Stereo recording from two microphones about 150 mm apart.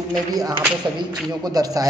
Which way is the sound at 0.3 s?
25° right (ahead or behind).